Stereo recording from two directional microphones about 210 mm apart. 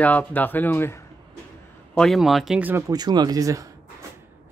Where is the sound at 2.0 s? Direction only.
Centre (ahead or behind).